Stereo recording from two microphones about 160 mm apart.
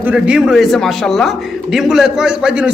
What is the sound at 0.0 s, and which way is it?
A man's voice, 5° right (ahead or behind).